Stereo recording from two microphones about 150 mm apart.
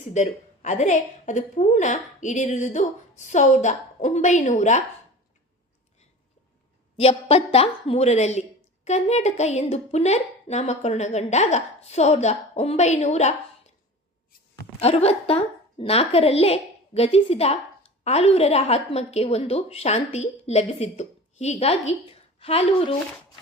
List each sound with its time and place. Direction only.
0.1 s a woman's voice: 50° left (ahead or behind)
6.9 s a woman's voice: 40° left (ahead or behind)
14.8 s a woman's voice: 45° left (ahead or behind)